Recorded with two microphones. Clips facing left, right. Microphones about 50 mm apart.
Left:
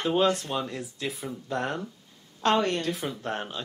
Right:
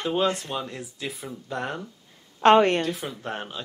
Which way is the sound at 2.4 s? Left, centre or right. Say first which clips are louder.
Right 7 dB; right.